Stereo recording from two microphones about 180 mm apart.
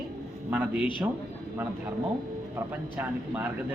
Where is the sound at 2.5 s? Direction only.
10° right (ahead or behind).